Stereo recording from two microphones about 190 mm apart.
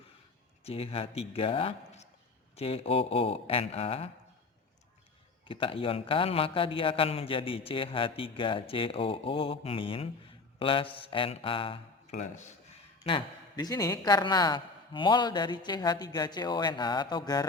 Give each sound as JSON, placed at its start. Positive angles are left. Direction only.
{"t": 0.6, "sound": "a man's voice", "side_deg": 30}
{"t": 5.5, "sound": "a man's voice", "side_deg": 30}
{"t": 13.1, "sound": "a man's voice", "side_deg": 25}